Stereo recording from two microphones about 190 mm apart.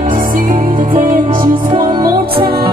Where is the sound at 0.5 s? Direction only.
30° right (ahead or behind).